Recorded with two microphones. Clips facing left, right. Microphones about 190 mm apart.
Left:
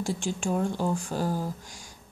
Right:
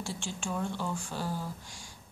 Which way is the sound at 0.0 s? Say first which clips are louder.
Left 8 dB; 40° left (ahead or behind).